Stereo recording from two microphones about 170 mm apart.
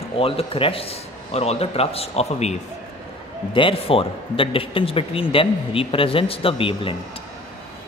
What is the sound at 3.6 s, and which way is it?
A man's voice, 30° left (ahead or behind).